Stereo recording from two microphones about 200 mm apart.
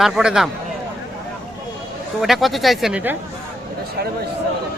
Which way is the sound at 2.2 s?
Centre (ahead or behind).